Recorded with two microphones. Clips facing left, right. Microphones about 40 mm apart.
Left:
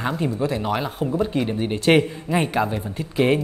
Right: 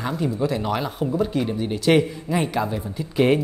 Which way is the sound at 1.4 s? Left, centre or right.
Left.